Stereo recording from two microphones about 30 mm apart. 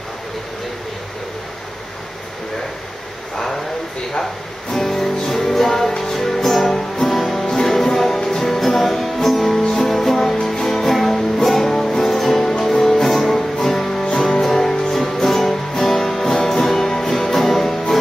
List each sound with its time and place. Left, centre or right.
4.7 s music: centre
9.6 s music: centre
9.8 s music: centre
10.7 s music: centre